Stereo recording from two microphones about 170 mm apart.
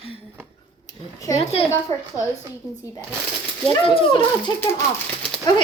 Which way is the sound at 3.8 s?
30° left (ahead or behind).